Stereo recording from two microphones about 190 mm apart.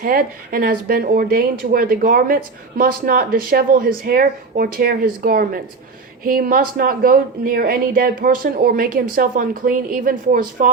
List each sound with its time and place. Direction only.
0.0 s speech: 50° right (ahead or behind)